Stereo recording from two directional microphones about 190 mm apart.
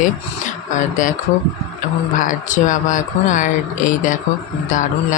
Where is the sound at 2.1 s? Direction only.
45° left (ahead or behind).